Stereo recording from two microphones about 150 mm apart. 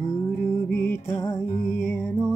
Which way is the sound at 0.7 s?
15° left (ahead or behind).